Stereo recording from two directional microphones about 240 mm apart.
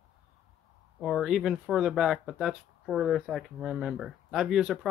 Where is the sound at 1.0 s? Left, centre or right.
Centre.